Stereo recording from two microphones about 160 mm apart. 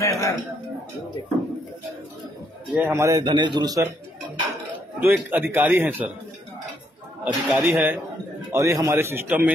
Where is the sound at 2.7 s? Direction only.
15° right (ahead or behind).